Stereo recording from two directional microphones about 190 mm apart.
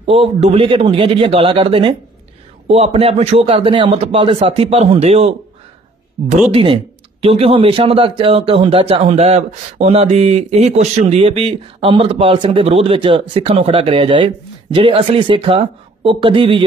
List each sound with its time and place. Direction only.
0.0 s a man's voice: 30° right (ahead or behind)
6.5 s speech: 30° right (ahead or behind)